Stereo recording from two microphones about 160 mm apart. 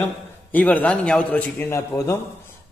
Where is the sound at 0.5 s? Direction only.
10° left (ahead or behind).